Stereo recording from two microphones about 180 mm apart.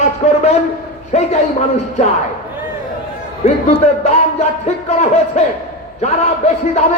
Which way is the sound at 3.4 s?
40° left (ahead or behind).